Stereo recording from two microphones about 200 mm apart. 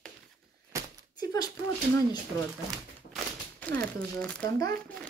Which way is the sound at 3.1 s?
5° left (ahead or behind).